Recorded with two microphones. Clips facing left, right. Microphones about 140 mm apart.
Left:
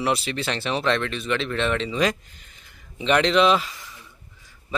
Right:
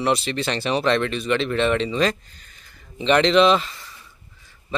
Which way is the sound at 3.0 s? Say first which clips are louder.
Right 3 dB; 5° left (ahead or behind).